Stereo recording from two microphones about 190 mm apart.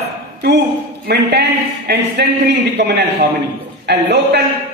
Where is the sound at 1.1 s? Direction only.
60° right (ahead or behind).